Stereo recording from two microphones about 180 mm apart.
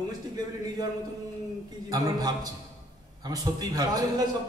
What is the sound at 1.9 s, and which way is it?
A man's voice, 20° right (ahead or behind).